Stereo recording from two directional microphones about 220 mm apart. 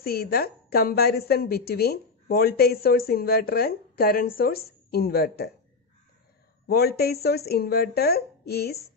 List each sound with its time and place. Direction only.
0.0 s a woman's voice: 45° left (ahead or behind)
6.7 s a woman's voice: 45° left (ahead or behind)